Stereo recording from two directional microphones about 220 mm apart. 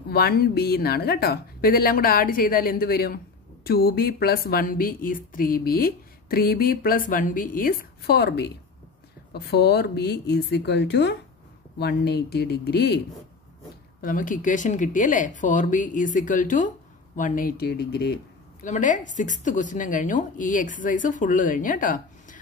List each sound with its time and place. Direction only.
0.1 s a woman's voice: 45° left (ahead or behind)
14.0 s speech: 35° left (ahead or behind)
18.6 s speech: 35° left (ahead or behind)